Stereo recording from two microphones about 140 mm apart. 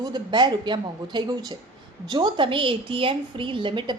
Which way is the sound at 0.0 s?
30° right (ahead or behind).